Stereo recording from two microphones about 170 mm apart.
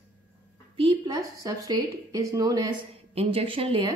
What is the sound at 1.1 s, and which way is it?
A woman's voice, 20° right (ahead or behind).